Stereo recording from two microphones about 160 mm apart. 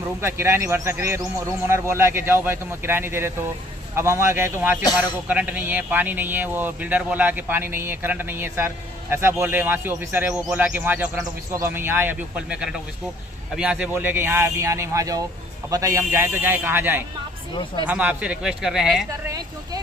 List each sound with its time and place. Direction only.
0.2 s speech: 15° right (ahead or behind)
19.0 s speech: 20° right (ahead or behind)